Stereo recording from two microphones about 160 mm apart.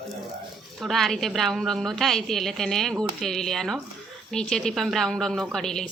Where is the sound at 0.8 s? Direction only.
Centre (ahead or behind).